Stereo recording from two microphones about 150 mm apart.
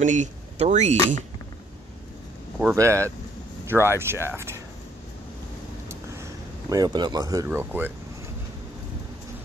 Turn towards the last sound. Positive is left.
turn(degrees=-15)  # may be behind; listen again after turning